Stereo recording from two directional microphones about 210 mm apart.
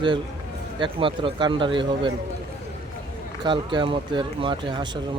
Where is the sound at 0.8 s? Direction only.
25° right (ahead or behind).